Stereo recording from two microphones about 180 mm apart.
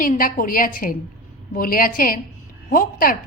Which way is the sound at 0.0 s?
50° left (ahead or behind).